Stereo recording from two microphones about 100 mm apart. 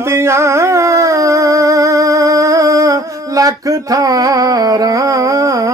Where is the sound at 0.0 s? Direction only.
25° right (ahead or behind).